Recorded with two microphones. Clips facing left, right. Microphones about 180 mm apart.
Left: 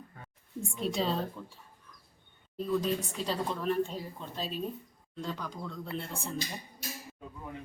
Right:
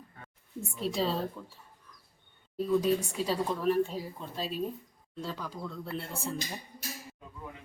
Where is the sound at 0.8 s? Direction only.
Centre (ahead or behind).